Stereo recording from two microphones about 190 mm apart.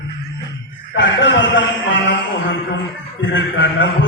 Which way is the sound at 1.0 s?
70° left (ahead or behind).